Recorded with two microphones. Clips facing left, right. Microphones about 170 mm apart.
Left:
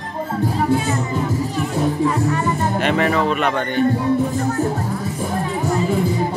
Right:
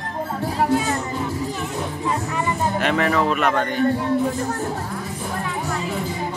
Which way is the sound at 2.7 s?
Centre (ahead or behind).